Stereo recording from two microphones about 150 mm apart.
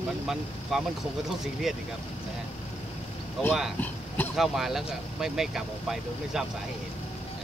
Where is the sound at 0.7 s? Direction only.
Centre (ahead or behind).